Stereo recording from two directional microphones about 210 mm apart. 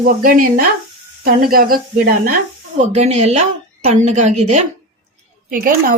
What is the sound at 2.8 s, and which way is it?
A woman's voice, 30° right (ahead or behind).